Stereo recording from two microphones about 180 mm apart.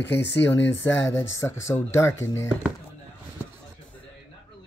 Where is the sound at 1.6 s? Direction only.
15° left (ahead or behind).